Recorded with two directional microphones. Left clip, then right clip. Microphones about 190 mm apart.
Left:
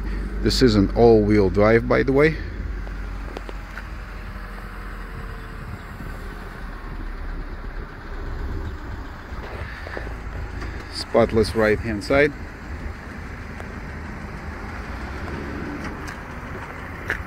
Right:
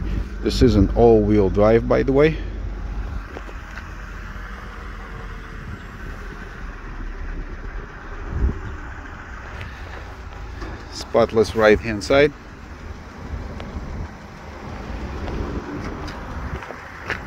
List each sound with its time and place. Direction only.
0.4 s speech: centre (ahead or behind)
11.1 s speech: 15° right (ahead or behind)
11.7 s speech: 30° right (ahead or behind)